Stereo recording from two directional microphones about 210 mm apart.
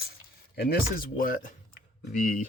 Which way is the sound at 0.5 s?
50° left (ahead or behind).